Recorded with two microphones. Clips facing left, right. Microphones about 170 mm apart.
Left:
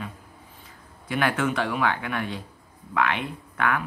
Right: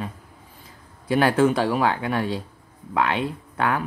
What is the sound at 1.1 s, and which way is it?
Speech, 35° right (ahead or behind).